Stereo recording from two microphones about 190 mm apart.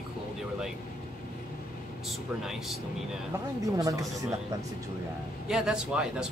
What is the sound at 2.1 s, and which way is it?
Speech, centre (ahead or behind).